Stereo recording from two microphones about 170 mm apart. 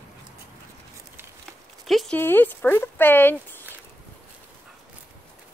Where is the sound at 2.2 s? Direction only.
10° left (ahead or behind).